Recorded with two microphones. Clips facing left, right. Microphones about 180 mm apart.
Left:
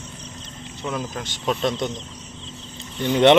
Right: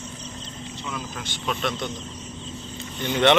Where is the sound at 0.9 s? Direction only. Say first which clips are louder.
Left 6 dB; 40° left (ahead or behind).